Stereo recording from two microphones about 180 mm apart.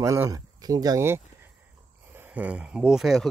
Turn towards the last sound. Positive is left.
turn(degrees=0)  # may be behind; listen again after turning